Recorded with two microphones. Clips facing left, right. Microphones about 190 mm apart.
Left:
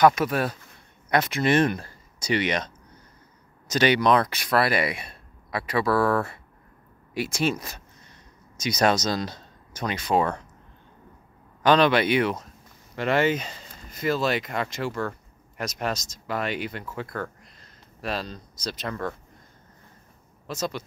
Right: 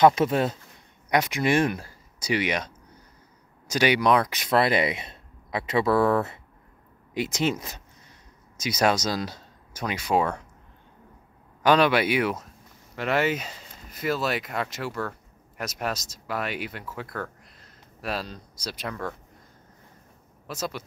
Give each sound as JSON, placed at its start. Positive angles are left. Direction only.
{"t": 0.0, "sound": "speech", "side_deg": -25}
{"t": 8.5, "sound": "speech", "side_deg": -5}
{"t": 11.6, "sound": "speech", "side_deg": -10}
{"t": 20.4, "sound": "a man's voice", "side_deg": -5}